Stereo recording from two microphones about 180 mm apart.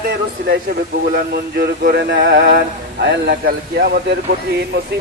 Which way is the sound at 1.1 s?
55° right (ahead or behind).